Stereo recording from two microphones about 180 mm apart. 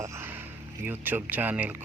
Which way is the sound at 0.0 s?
15° right (ahead or behind).